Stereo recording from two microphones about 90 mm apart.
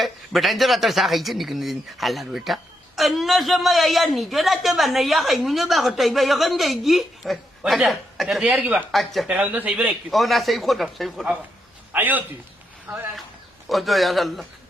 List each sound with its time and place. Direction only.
0.0 s a man's voice: centre (ahead or behind)
8.9 s a man's voice: centre (ahead or behind)
9.2 s speech: 15° right (ahead or behind)
10.1 s a man's voice: centre (ahead or behind)
11.9 s a man's voice: 20° right (ahead or behind)
13.7 s a man's voice: centre (ahead or behind)